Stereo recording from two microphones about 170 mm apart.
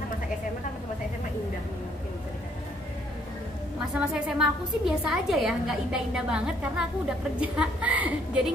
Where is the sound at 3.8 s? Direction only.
Centre (ahead or behind).